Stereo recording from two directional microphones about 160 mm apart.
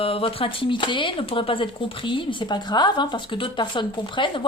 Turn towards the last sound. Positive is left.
turn(degrees=30)  # may be behind; listen again after turning